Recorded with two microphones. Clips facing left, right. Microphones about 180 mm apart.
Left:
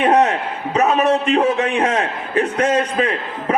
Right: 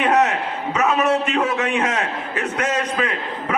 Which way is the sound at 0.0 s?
30° left (ahead or behind).